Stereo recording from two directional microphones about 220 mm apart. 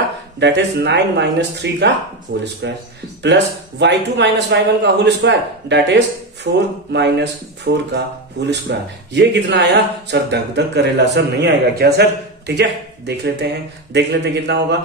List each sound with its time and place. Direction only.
0.4 s speech: 50° right (ahead or behind)